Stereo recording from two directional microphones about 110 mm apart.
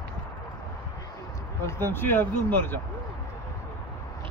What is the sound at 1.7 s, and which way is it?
Speech, 20° left (ahead or behind).